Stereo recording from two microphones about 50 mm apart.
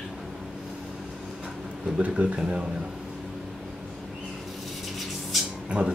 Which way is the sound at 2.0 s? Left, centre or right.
Right.